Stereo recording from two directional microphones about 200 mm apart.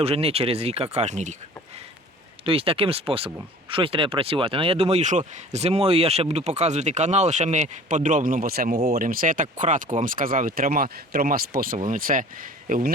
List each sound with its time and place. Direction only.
0.0 s speech: 30° right (ahead or behind)
2.4 s speech: 25° right (ahead or behind); by 12.9 s 45° right (ahead or behind)